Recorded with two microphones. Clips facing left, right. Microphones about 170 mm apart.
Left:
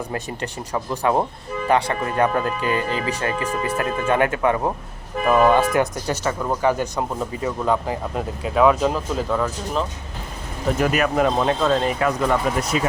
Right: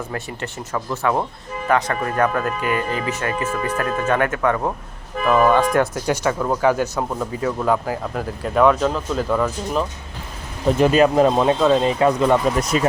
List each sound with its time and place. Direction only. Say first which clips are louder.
0.1 s speech: left 1 dB; 20° left (ahead or behind)
6.1 s speech: right 3 dB; 10° right (ahead or behind)
10.8 s speech: right 6 dB; 25° right (ahead or behind)
12.7 s speech: right 4 dB; 45° right (ahead or behind)